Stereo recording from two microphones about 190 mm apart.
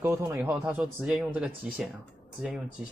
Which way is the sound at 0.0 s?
15° right (ahead or behind).